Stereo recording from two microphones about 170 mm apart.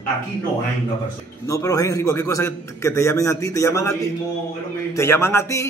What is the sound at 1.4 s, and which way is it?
A man's voice, 20° left (ahead or behind).